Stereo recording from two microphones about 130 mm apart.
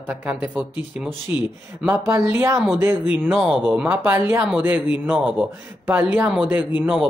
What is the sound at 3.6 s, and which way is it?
Speech, 10° right (ahead or behind).